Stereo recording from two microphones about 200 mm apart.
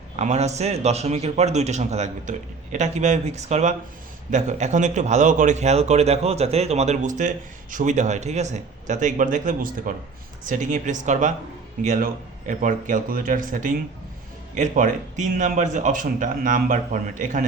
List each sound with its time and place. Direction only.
0.2 s a man's voice: 35° right (ahead or behind)